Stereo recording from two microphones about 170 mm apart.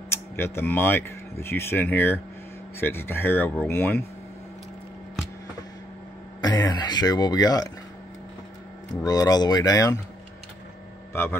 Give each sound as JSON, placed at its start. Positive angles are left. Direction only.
{"t": 0.1, "sound": "speech", "side_deg": 15}
{"t": 6.4, "sound": "speech", "side_deg": 25}
{"t": 9.0, "sound": "speech", "side_deg": 20}